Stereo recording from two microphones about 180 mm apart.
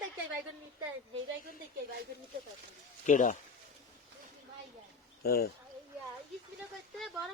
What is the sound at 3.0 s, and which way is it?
Speech, 45° left (ahead or behind).